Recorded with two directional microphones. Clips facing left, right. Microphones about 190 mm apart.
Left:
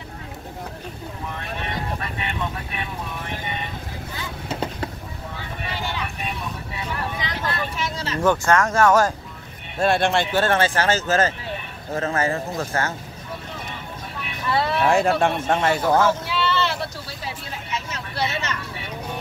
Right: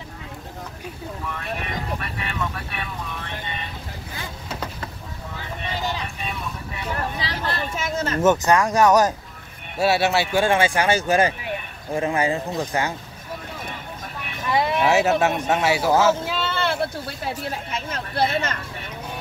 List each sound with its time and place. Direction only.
5.8 s vehicle: 40° right (ahead or behind)
7.2 s vehicle: 35° right (ahead or behind)
7.7 s a sound: 50° right (ahead or behind)
8.2 s speech: 20° right (ahead or behind)
9.8 s speech: 5° right (ahead or behind)
14.5 s speech: 15° right (ahead or behind)
16.3 s vehicle: 50° right (ahead or behind)
17.2 s speech: 50° right (ahead or behind)